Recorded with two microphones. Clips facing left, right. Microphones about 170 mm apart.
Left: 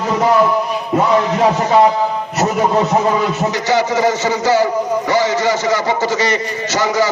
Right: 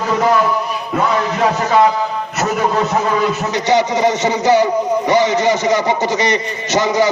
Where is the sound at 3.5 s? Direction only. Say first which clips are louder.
Right 1 dB; 20° right (ahead or behind).